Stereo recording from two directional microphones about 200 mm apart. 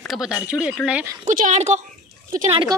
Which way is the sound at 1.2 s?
40° right (ahead or behind).